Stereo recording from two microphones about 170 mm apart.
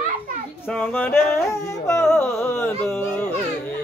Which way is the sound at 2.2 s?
15° left (ahead or behind).